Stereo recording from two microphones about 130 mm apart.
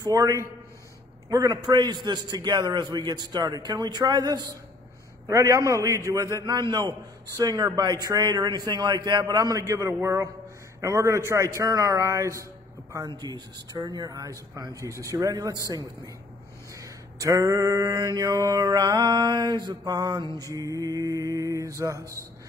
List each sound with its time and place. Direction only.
0.0 s mantra: 25° right (ahead or behind)
1.3 s a man's voice: 30° right (ahead or behind)
5.3 s mantra: 25° right (ahead or behind)